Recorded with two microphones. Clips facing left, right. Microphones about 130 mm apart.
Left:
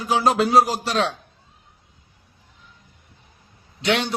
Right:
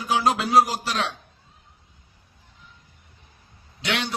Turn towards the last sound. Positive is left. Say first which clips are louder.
# left 6 dB
turn(degrees=35)  # may be behind; listen again after turning